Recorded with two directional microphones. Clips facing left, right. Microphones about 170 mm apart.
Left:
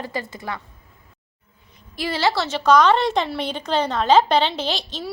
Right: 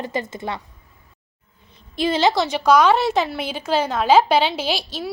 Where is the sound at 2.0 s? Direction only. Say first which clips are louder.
Right 4 dB; 20° right (ahead or behind).